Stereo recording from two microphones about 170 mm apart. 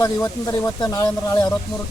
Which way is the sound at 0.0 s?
20° left (ahead or behind).